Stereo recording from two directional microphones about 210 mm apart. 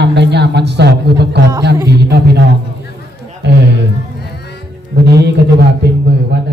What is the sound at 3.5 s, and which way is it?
Speech, 55° right (ahead or behind).